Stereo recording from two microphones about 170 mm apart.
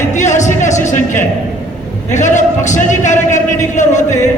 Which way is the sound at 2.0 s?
45° left (ahead or behind).